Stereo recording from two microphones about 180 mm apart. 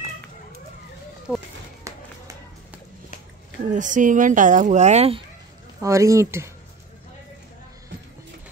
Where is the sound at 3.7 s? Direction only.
45° right (ahead or behind).